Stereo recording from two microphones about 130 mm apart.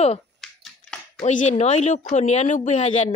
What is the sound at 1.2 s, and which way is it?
Speech, 65° left (ahead or behind).